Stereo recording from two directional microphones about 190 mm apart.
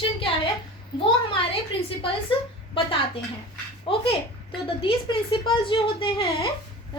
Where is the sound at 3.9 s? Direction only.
25° left (ahead or behind).